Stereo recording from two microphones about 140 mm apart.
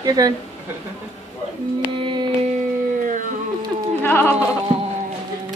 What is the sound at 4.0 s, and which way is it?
Bleat, 15° left (ahead or behind).